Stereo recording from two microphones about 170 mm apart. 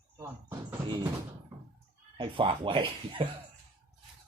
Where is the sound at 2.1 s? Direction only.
30° right (ahead or behind).